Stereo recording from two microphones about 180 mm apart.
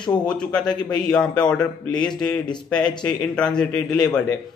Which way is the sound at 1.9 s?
25° left (ahead or behind).